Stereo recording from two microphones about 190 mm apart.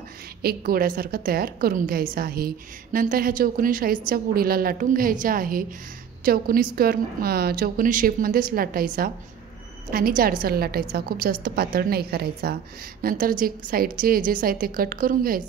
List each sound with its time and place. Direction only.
0.4 s a woman's voice: 50° right (ahead or behind)